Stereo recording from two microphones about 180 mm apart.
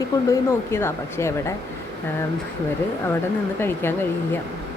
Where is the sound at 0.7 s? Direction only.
15° left (ahead or behind).